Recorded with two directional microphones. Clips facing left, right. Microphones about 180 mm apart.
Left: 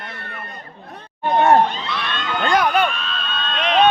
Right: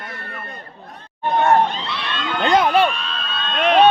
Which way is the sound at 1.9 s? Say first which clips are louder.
Even; 25° right (ahead or behind).